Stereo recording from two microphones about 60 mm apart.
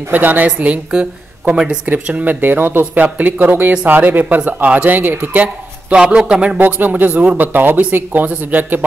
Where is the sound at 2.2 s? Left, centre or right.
Right.